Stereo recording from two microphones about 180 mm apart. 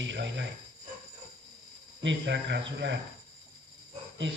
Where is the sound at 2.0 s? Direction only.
85° right.